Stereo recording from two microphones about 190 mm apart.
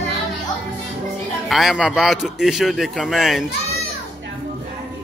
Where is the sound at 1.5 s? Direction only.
Centre (ahead or behind).